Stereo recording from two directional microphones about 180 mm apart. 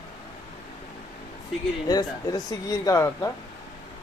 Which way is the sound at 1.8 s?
20° left (ahead or behind).